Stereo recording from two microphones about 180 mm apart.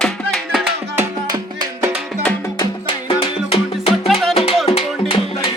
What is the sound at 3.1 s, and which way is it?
Music, 30° left (ahead or behind).